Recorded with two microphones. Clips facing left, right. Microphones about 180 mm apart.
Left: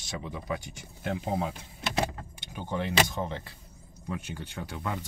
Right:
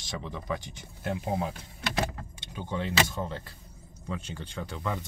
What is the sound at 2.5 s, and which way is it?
Speech, 15° left (ahead or behind).